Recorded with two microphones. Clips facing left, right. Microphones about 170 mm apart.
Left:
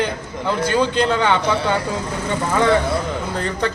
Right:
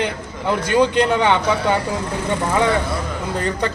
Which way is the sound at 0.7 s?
20° right (ahead or behind).